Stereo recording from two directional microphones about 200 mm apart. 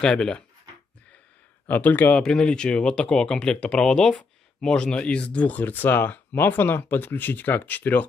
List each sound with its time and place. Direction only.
0.0 s speech: 5° left (ahead or behind)
1.7 s speech: 10° left (ahead or behind)